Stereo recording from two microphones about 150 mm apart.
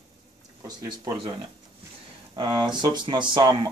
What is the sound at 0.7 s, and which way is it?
Speech, 30° right (ahead or behind).